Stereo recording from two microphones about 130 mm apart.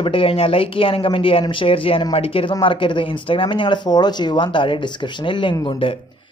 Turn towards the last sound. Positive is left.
turn(degrees=45)  # may be behind; listen again after turning